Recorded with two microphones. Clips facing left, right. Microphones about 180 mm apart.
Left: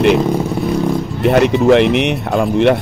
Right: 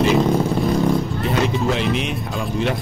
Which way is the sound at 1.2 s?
65° left (ahead or behind).